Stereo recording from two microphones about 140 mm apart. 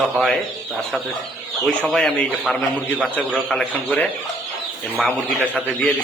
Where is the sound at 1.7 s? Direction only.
5° left (ahead or behind).